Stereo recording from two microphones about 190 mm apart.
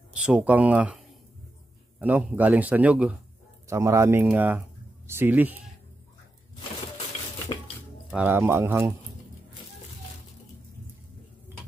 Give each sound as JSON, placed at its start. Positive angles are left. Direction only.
{"t": 0.1, "sound": "a man's voice", "side_deg": -5}
{"t": 7.5, "sound": "dishes", "side_deg": 20}
{"t": 8.1, "sound": "a man's voice", "side_deg": -10}